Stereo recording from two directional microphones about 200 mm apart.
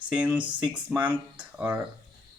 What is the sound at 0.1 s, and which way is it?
Speech, 5° right (ahead or behind).